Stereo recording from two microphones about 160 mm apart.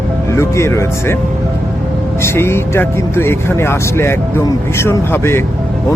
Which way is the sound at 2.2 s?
15° left (ahead or behind).